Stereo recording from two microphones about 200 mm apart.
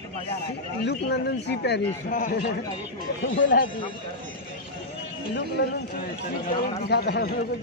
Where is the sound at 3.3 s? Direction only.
70° left (ahead or behind).